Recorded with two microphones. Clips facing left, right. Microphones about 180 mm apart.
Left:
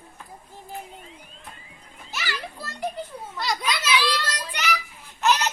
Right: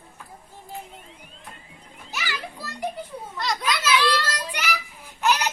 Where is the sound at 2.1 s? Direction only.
10° right (ahead or behind).